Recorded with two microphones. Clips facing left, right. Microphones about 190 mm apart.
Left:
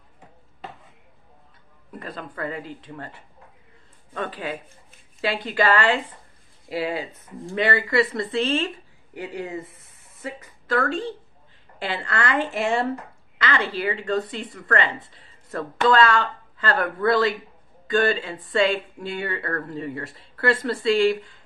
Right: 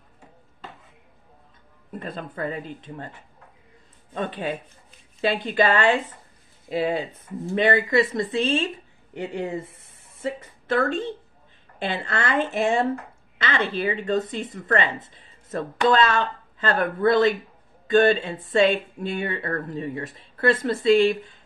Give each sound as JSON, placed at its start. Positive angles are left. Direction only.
{"t": 1.9, "sound": "speech", "side_deg": -25}
{"t": 4.1, "sound": "speech", "side_deg": -25}